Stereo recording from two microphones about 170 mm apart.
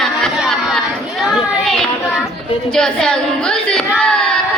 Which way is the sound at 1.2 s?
Centre (ahead or behind).